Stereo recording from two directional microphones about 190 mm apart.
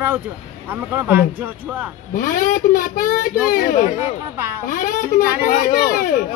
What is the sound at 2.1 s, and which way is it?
Speech, 45° left (ahead or behind).